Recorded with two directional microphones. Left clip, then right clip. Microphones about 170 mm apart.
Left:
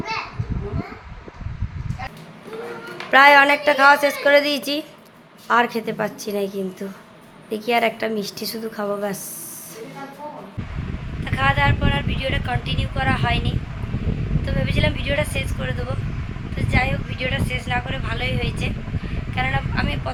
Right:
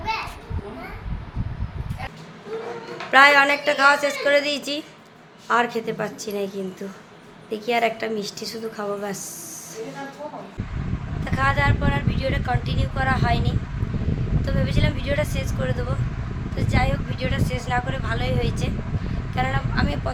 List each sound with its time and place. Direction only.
3.1 s a woman's voice: 20° left (ahead or behind)
11.3 s speech: 5° right (ahead or behind)